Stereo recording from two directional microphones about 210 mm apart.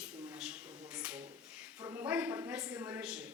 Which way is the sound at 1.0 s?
5° right (ahead or behind).